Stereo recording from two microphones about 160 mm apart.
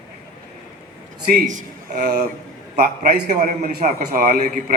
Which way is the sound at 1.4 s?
50° right (ahead or behind).